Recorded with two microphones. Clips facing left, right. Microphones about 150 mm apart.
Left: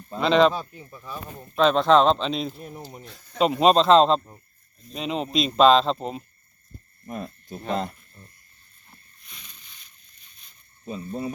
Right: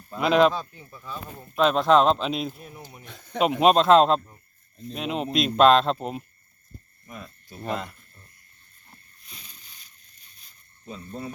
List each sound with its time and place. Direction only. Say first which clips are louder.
0.2 s speech: left 1 dB; 5° right (ahead or behind)
0.5 s speech: left 1 dB; 20° left (ahead or behind)
1.4 s speech: left 2 dB; 5° right (ahead or behind)
2.6 s speech: left 5 dB; 40° left (ahead or behind)
3.1 s speech: right 1 dB; 60° right (ahead or behind)
3.6 s speech: even; 5° right (ahead or behind)
7.0 s speech: left 8 dB; 45° left (ahead or behind)
7.7 s speech: left 3 dB; 35° left (ahead or behind)
9.2 s a sound: right 1 dB; 35° right (ahead or behind)
10.8 s speech: left 5 dB; 15° left (ahead or behind)